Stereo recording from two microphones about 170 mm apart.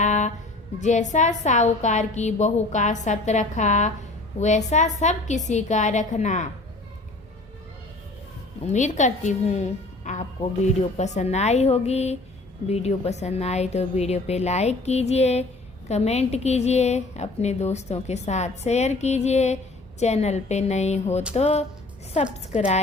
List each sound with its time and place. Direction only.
0.0 s a sound: 45° left (ahead or behind)
0.8 s a woman's voice: 45° left (ahead or behind)
8.6 s a woman's voice: 45° left (ahead or behind)